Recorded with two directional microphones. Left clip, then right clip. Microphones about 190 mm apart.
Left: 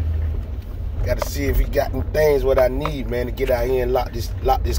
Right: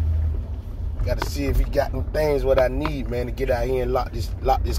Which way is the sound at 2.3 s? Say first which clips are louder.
Left 2 dB; 5° left (ahead or behind).